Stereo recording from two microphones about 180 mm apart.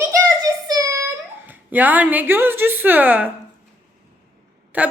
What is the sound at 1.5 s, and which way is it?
A woman's voice, 10° right (ahead or behind).